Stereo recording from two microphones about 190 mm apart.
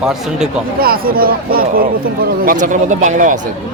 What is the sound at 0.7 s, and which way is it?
Speech, 50° right (ahead or behind).